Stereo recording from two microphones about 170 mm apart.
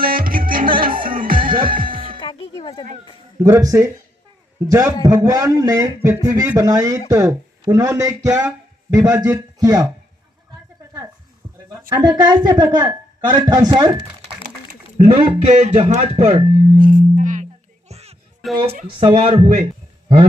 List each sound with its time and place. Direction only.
0.0 s music: 60° right (ahead or behind)
2.0 s music: 30° right (ahead or behind)
2.2 s music: 30° left (ahead or behind)
3.3 s a man's voice: 20° right (ahead or behind)
12.0 s speech: 25° right (ahead or behind)
15.2 s speech: 40° right (ahead or behind)
16.7 s sine wave: 55° right (ahead or behind)
18.4 s a woman's voice: centre (ahead or behind)
19.0 s speech: 35° right (ahead or behind)